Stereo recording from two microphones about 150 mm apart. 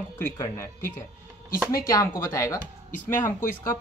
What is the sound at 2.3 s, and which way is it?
Speech, 20° left (ahead or behind).